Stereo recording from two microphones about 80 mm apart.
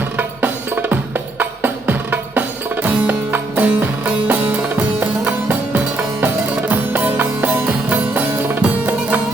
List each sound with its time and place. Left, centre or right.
0.2 s music: right